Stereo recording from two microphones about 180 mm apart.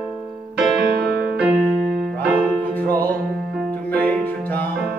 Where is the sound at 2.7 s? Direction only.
10° left (ahead or behind).